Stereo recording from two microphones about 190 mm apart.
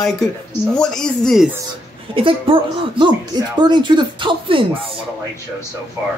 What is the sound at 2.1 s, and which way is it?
Speech, 25° right (ahead or behind).